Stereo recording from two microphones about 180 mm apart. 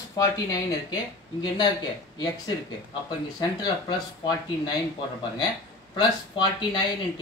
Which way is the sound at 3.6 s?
25° left (ahead or behind).